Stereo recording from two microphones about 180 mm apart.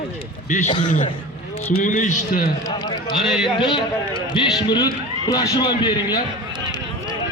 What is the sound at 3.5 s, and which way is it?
A man's voice, 25° left (ahead or behind).